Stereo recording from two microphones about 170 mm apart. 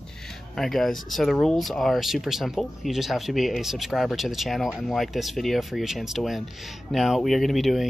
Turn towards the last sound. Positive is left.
turn(degrees=0)  # may be behind; listen again after turning